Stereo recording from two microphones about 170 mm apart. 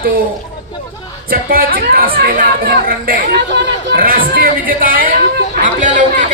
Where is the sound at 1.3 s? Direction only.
60° right (ahead or behind).